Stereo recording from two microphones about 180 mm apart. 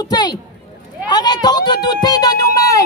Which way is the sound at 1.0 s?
25° left (ahead or behind).